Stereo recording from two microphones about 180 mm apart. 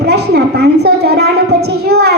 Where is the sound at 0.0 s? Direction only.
65° right (ahead or behind).